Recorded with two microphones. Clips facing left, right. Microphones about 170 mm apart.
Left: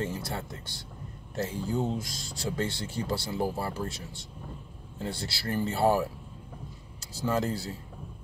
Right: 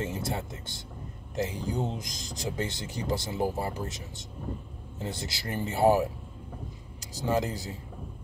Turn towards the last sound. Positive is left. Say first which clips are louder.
# even
turn(degrees=-15)  # may be behind; listen again after turning